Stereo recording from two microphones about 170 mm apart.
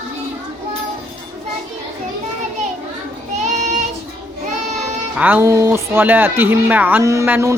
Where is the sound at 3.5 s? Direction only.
45° right (ahead or behind).